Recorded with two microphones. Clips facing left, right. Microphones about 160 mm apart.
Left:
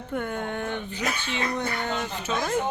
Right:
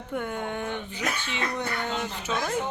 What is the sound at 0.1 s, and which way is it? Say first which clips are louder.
Speech: left 1 dB; 10° right (ahead or behind).